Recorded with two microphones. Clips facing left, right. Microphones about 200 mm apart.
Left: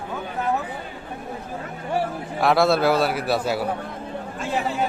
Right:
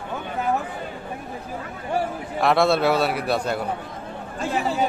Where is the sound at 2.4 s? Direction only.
Centre (ahead or behind).